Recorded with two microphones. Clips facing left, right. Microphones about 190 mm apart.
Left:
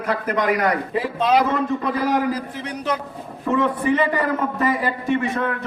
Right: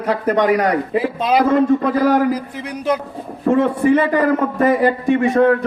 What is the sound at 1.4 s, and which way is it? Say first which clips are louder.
Speech: right 8 dB; 50° right (ahead or behind).